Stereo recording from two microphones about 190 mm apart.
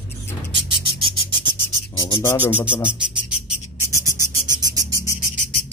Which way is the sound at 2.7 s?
5° right (ahead or behind).